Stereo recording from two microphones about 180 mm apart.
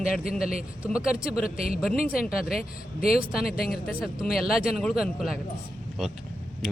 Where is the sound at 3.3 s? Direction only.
Centre (ahead or behind).